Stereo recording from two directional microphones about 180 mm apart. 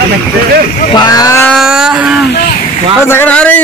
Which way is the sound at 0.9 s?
20° left (ahead or behind).